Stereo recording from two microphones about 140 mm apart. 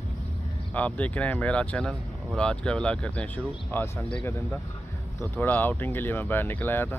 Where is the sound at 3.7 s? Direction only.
20° left (ahead or behind).